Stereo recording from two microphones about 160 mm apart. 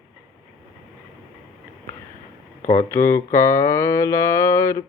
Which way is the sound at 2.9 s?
15° left (ahead or behind).